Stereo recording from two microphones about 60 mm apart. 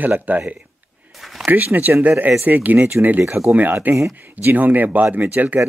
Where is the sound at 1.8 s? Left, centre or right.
Right.